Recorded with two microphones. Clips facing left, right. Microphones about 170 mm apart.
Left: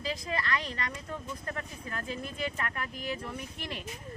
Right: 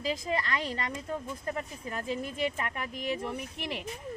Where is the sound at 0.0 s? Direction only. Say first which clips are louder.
Right 3 dB; 20° right (ahead or behind).